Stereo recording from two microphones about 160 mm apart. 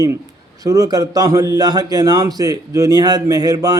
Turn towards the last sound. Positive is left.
turn(degrees=-25)  # may be behind; listen again after turning